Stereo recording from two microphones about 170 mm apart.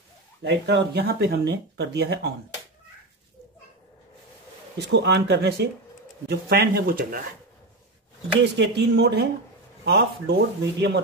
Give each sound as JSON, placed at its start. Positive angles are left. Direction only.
{"t": 0.4, "sound": "speech", "side_deg": -85}
{"t": 4.7, "sound": "speech", "side_deg": -80}
{"t": 8.5, "sound": "speech", "side_deg": -85}